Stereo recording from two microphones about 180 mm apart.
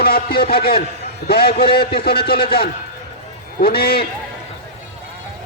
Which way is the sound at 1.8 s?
30° left (ahead or behind).